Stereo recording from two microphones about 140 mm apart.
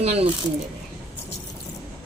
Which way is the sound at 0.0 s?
50° right (ahead or behind).